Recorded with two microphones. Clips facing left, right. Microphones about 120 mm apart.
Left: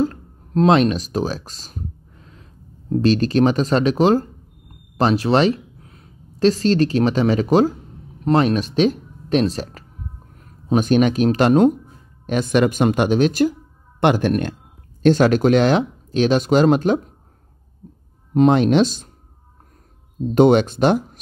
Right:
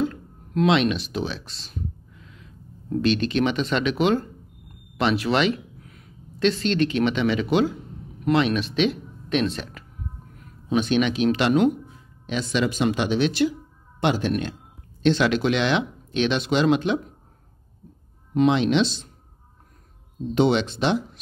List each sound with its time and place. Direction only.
0.0 s a sound: 35° left (ahead or behind)
4.9 s speech: 35° left (ahead or behind)
18.3 s speech: 45° left (ahead or behind)
20.3 s speech: 45° left (ahead or behind)